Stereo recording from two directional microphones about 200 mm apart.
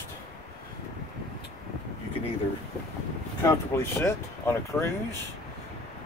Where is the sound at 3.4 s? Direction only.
15° left (ahead or behind).